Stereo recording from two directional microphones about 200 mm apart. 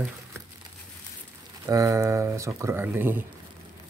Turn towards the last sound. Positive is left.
turn(degrees=-10)  # may be behind; listen again after turning